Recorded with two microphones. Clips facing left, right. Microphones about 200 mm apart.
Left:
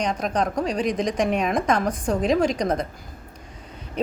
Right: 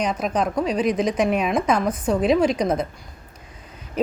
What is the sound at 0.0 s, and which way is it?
Speech, 5° right (ahead or behind).